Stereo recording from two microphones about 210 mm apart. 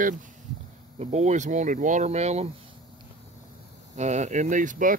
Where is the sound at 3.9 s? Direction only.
35° right (ahead or behind).